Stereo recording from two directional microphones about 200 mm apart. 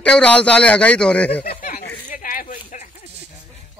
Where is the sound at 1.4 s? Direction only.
50° left (ahead or behind).